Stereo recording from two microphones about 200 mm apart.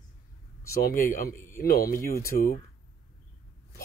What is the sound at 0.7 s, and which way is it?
Speech, 45° left (ahead or behind).